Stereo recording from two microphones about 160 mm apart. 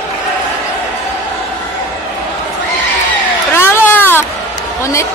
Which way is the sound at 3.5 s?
15° left (ahead or behind).